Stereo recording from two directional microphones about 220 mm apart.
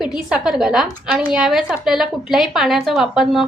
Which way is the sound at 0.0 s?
5° right (ahead or behind).